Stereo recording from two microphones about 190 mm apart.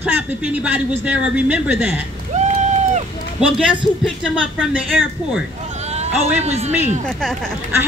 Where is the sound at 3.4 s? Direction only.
5° right (ahead or behind).